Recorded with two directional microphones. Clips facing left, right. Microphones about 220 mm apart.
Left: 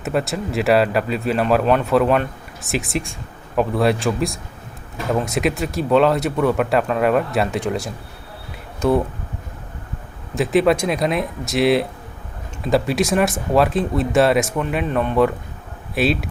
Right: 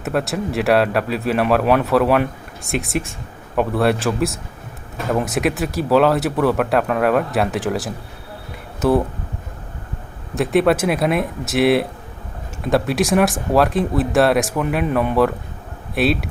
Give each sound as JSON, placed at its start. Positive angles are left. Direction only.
{"t": 0.0, "sound": "speech", "side_deg": 0}
{"t": 10.3, "sound": "speech", "side_deg": 0}